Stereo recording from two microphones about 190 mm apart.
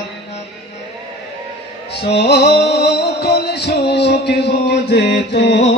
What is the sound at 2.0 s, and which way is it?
Music, 60° left (ahead or behind).